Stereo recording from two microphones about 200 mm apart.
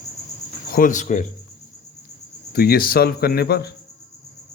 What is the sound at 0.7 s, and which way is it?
Speech, 40° left (ahead or behind).